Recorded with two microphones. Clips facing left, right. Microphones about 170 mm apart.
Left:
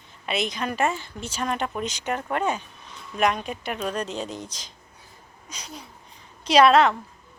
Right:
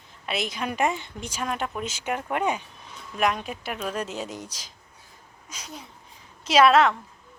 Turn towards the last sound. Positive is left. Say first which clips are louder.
# left 1 dB
turn(degrees=0)  # may be behind; listen again after turning